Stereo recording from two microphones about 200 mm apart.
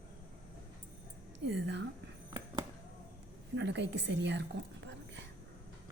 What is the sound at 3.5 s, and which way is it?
Speech, 60° right (ahead or behind).